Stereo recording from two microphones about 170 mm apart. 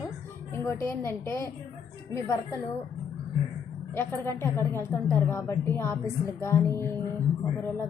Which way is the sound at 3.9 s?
15° left (ahead or behind).